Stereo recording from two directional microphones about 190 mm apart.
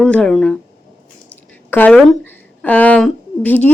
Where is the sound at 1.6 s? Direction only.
10° left (ahead or behind).